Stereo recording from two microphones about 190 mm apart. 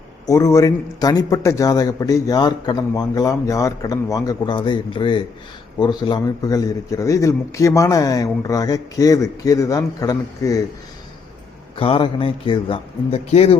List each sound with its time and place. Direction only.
0.3 s a man's voice: 15° left (ahead or behind)
11.8 s a man's voice: 25° left (ahead or behind)